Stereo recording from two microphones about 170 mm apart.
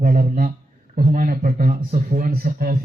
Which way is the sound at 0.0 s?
50° right (ahead or behind).